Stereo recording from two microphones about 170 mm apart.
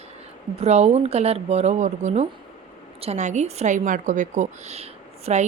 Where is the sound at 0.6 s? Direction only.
40° right (ahead or behind).